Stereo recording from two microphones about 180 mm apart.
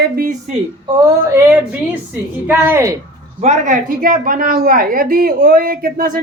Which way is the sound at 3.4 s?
40° right (ahead or behind).